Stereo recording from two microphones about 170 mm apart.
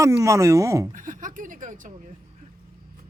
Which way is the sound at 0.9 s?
50° right (ahead or behind).